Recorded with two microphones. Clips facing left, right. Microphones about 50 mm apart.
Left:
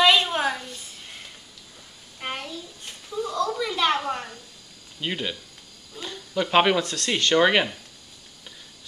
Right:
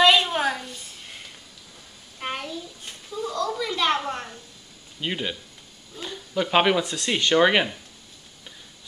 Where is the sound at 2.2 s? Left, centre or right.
Centre.